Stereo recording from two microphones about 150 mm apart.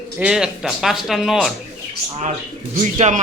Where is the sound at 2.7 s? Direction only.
55° right (ahead or behind).